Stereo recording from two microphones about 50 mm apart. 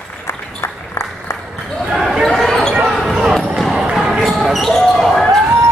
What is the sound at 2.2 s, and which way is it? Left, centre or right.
Basketball bounce, centre.